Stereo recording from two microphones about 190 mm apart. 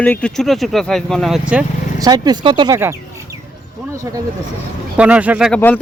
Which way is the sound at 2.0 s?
20° right (ahead or behind).